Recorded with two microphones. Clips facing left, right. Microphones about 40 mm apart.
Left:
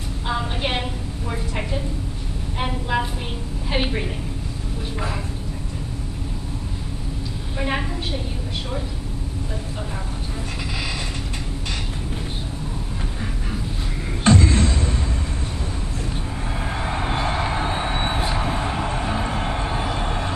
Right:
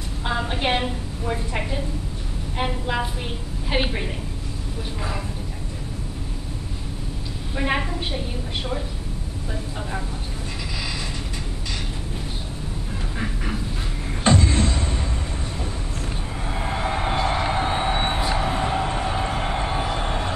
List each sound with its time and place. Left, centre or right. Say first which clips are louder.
0.3 s a sound: right 1 dB; centre
3.7 s a woman's voice: even; centre
7.5 s a woman's voice: right 1 dB; centre
14.2 s music: left 2 dB; right
16.5 s a sound: right 2 dB; centre
17.3 s music: right 1 dB; centre
18.4 s vehicle: right 1 dB; centre